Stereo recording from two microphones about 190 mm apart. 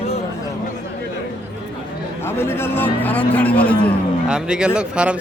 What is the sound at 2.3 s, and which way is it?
Speech, 10° left (ahead or behind).